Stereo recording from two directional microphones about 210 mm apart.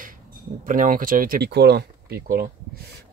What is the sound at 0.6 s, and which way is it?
Speech, 40° right (ahead or behind).